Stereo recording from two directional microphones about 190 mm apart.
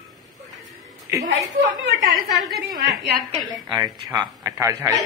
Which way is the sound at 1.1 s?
15° right (ahead or behind).